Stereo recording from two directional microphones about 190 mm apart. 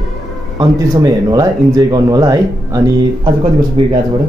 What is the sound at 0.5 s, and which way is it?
Speech, 25° right (ahead or behind).